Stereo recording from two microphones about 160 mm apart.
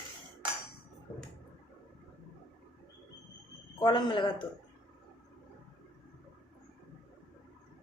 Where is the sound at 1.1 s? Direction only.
15° left (ahead or behind).